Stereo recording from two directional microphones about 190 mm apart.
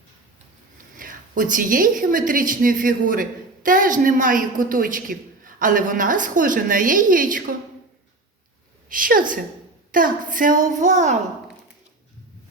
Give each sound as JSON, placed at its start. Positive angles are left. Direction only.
{"t": 0.9, "sound": "a woman's voice", "side_deg": -45}
{"t": 8.9, "sound": "a woman's voice", "side_deg": -45}